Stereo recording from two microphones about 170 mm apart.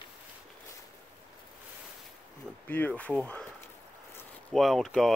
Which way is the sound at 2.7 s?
10° left (ahead or behind).